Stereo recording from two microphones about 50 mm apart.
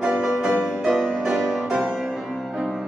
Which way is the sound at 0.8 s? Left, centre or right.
Centre.